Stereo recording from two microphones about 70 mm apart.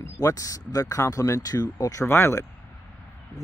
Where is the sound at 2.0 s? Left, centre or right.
Left.